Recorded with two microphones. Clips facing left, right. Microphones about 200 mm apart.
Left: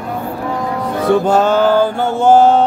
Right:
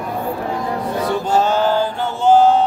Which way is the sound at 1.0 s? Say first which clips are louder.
Left 6 dB; 55° left (ahead or behind).